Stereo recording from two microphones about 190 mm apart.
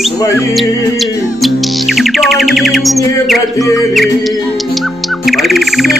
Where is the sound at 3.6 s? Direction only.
20° left (ahead or behind).